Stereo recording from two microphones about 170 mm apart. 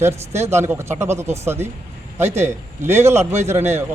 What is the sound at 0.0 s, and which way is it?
A man's voice, 15° right (ahead or behind).